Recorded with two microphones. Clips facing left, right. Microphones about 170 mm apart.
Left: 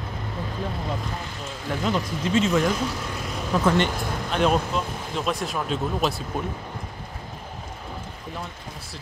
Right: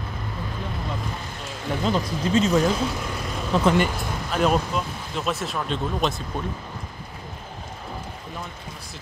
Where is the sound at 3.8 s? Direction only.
5° right (ahead or behind).